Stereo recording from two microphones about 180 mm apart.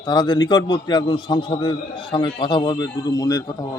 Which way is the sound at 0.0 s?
25° left (ahead or behind).